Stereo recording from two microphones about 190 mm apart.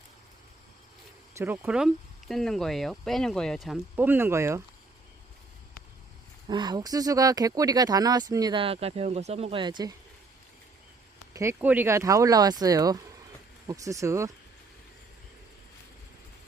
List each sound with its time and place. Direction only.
1.3 s speech: 10° right (ahead or behind)
3.9 s speech: 10° right (ahead or behind)
6.5 s speech: 20° right (ahead or behind)
11.3 s speech: 10° right (ahead or behind)